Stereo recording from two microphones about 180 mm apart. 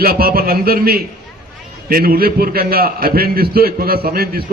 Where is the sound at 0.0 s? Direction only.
55° right (ahead or behind).